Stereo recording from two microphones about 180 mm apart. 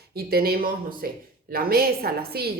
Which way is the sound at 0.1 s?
60° right (ahead or behind).